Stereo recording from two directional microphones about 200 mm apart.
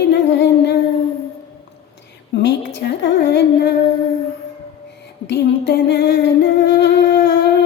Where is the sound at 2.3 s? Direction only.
55° left (ahead or behind).